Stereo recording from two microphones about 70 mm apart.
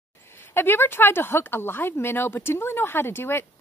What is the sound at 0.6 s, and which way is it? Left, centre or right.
Speech, left.